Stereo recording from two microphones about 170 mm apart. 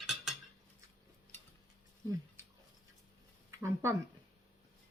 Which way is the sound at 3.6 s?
15° right (ahead or behind).